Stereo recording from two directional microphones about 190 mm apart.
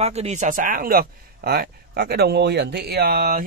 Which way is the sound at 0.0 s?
35° right (ahead or behind).